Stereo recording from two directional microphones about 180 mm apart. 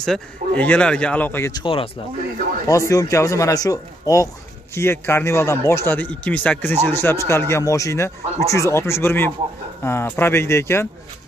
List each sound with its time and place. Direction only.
0.0 s speech: 5° left (ahead or behind)
1.5 s speech: 25° left (ahead or behind)
2.9 s speech: 15° left (ahead or behind)